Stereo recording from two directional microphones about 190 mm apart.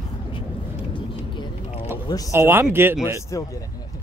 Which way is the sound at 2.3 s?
10° right (ahead or behind).